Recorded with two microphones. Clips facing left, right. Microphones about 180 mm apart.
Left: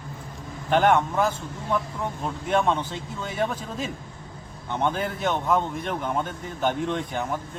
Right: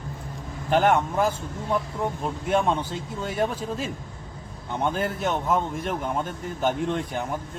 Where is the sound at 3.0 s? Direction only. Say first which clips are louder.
Right 1 dB; 50° right (ahead or behind).